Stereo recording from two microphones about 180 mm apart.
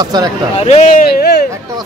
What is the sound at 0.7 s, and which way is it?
Speech, 40° left (ahead or behind).